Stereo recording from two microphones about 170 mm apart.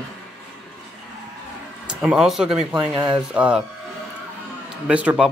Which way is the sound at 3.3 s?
5° right (ahead or behind).